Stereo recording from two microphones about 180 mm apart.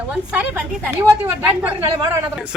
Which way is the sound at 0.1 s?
5° right (ahead or behind).